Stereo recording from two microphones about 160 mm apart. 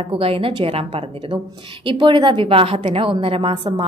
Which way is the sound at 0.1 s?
35° right (ahead or behind).